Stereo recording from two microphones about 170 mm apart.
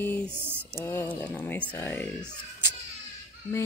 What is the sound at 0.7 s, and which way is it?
Speech, 15° left (ahead or behind).